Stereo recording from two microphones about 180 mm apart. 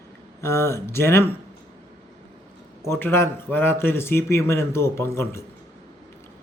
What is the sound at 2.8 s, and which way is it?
Speech, 15° left (ahead or behind).